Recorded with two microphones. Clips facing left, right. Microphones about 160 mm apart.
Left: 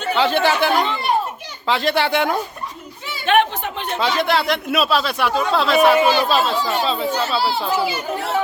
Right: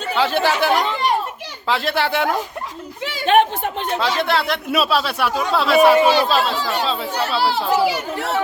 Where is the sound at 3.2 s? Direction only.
40° right (ahead or behind).